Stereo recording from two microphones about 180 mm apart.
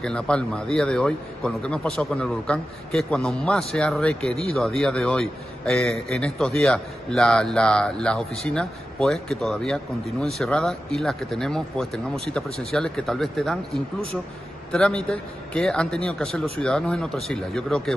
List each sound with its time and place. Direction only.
0.0 s a man's voice: 5° left (ahead or behind)
14.7 s a man's voice: 5° left (ahead or behind)